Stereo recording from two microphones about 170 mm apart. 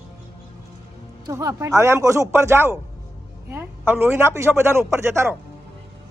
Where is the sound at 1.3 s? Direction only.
20° right (ahead or behind).